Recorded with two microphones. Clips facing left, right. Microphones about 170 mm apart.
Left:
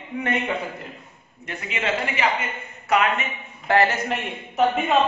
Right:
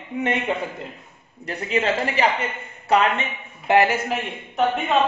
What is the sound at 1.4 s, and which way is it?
A man's voice, 35° right (ahead or behind).